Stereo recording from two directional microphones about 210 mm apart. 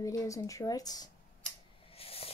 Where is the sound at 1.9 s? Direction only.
30° left (ahead or behind).